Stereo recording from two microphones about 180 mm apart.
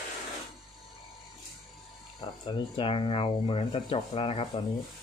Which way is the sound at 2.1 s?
25° left (ahead or behind).